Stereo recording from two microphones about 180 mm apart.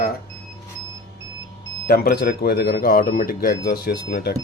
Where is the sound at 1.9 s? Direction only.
60° left (ahead or behind).